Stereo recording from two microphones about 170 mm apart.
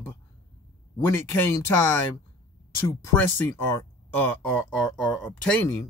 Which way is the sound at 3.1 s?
10° left (ahead or behind).